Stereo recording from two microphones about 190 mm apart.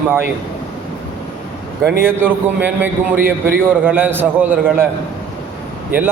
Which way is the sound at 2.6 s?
10° right (ahead or behind).